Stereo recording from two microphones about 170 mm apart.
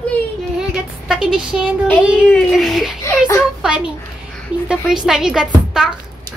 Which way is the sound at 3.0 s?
20° left (ahead or behind).